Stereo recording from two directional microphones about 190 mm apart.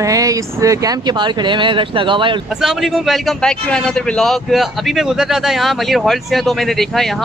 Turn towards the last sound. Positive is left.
turn(degrees=0)  # may be behind; listen again after turning